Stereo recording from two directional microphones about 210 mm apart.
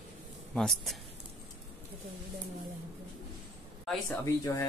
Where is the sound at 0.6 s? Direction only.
Centre (ahead or behind).